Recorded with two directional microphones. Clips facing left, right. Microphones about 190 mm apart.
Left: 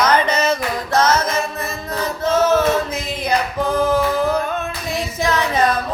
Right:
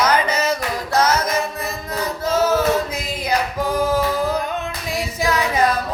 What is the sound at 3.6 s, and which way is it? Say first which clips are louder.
Singing: left 3 dB; 10° right (ahead or behind).